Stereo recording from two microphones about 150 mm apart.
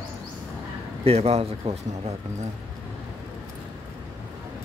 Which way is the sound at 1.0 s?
45° right (ahead or behind).